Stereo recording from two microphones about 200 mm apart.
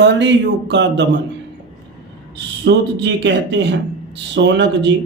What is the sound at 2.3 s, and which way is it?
A man's voice, 60° right (ahead or behind).